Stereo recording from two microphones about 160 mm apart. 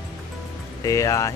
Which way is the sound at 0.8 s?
20° left (ahead or behind).